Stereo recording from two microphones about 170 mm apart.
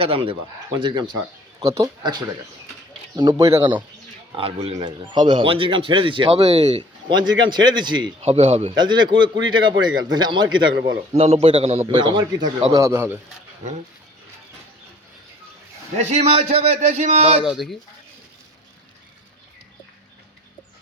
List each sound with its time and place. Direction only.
0.0 s a man's voice: 35° right (ahead or behind)
8.7 s speech: 25° right (ahead or behind)
11.1 s a man's voice: 40° right (ahead or behind)
12.7 s a man's voice: 15° right (ahead or behind)
16.0 s a man's voice: 40° right (ahead or behind)
17.4 s speech: centre (ahead or behind)